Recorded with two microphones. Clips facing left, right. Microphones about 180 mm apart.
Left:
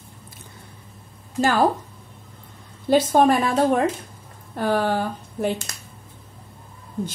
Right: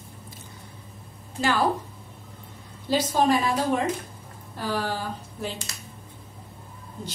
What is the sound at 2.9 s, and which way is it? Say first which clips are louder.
Speech: left 5 dB; 55° left (ahead or behind).